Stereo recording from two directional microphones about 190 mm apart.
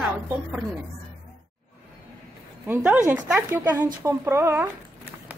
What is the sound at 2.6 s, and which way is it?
Speech, 10° right (ahead or behind).